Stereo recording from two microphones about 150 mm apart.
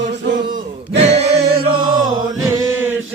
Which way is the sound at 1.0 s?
45° right (ahead or behind).